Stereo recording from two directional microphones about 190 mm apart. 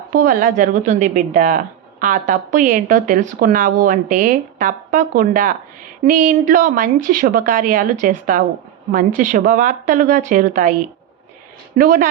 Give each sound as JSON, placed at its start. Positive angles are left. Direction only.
{"t": 0.1, "sound": "a woman's voice", "side_deg": -50}
{"t": 11.8, "sound": "a woman's voice", "side_deg": -45}